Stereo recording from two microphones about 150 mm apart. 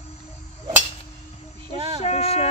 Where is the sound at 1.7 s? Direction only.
35° right (ahead or behind).